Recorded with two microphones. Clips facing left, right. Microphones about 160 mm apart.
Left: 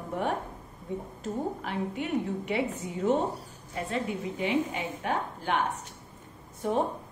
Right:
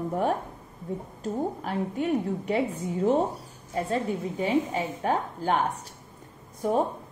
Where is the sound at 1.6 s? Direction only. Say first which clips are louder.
Right 4 dB; 40° right (ahead or behind).